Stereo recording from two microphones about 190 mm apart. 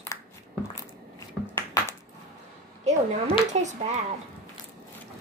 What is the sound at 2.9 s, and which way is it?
Speech, 35° right (ahead or behind).